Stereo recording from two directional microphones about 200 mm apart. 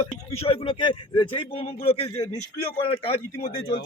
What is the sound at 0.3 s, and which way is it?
A man's voice, 30° left (ahead or behind).